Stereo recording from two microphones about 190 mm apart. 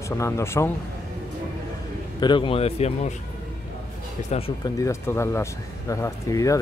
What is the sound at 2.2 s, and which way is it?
Speech, 25° left (ahead or behind).